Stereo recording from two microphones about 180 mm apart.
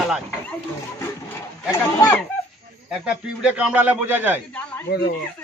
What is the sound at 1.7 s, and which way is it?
Speech, 15° left (ahead or behind).